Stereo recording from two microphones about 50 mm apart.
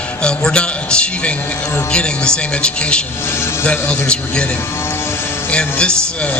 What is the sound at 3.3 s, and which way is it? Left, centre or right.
Speech, left.